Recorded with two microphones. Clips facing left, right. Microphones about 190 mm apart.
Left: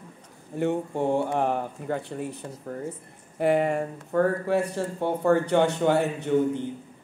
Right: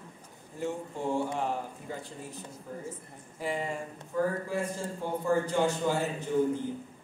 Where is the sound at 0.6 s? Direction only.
65° left (ahead or behind).